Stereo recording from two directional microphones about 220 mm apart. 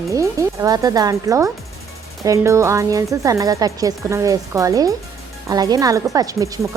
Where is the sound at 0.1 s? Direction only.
15° right (ahead or behind).